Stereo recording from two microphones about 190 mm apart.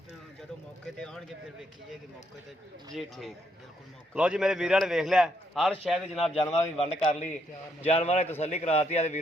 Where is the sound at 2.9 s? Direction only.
Centre (ahead or behind).